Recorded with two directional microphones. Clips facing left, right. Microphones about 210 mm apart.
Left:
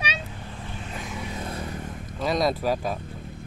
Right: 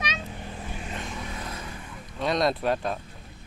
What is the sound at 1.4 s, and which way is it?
Vehicle, 30° left (ahead or behind).